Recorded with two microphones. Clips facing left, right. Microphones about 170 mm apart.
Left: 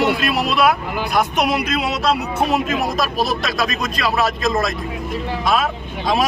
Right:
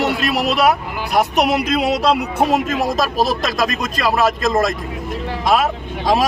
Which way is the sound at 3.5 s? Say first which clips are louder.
Right 2 dB; 45° right (ahead or behind).